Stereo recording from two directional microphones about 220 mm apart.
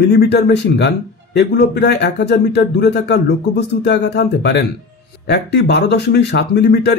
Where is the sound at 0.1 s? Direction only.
50° left (ahead or behind).